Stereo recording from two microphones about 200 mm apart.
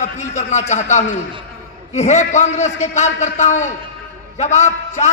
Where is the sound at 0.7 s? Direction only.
35° left (ahead or behind).